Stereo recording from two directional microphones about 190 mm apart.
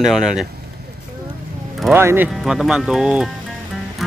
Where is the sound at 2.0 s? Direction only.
10° right (ahead or behind).